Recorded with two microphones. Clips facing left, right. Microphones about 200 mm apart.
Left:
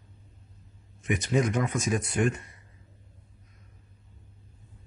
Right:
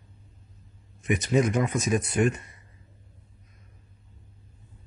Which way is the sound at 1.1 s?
20° right (ahead or behind).